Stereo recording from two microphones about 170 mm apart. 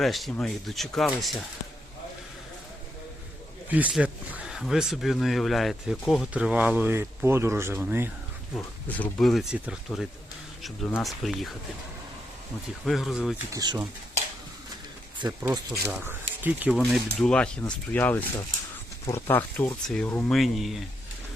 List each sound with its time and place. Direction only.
0.0 s speech: centre (ahead or behind)
3.7 s speech: 10° right (ahead or behind)
8.5 s speech: 5° left (ahead or behind)
12.8 s speech: centre (ahead or behind)
13.5 s speech: 20° right (ahead or behind)
15.3 s speech: 15° right (ahead or behind)
16.7 s speech: centre (ahead or behind)